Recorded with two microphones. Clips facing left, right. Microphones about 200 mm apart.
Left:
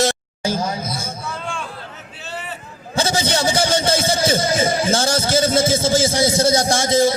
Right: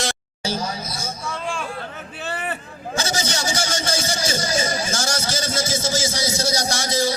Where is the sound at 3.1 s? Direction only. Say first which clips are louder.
Left 8 dB; 55° left (ahead or behind).